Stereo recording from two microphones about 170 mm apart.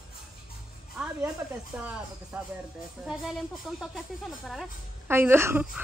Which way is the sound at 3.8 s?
Centre (ahead or behind).